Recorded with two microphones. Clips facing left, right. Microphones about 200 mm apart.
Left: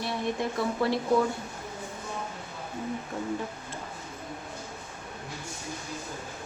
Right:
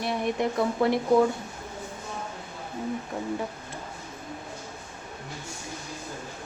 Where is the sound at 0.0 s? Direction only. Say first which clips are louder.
Right 3 dB; 15° right (ahead or behind).